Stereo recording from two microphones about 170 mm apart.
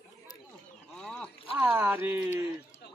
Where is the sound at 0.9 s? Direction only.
5° left (ahead or behind).